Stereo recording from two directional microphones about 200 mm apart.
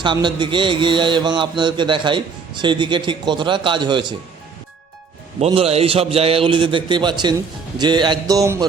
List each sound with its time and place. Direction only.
0.0 s a man's voice: 25° right (ahead or behind)
5.5 s a man's voice: 30° right (ahead or behind)